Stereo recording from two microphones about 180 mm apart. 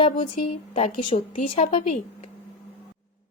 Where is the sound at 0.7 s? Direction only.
40° left (ahead or behind).